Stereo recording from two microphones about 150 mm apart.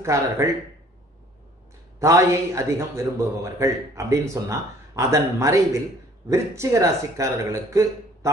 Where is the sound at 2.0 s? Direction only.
20° right (ahead or behind).